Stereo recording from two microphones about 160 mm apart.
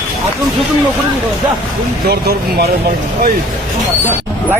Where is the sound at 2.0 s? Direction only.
80° right.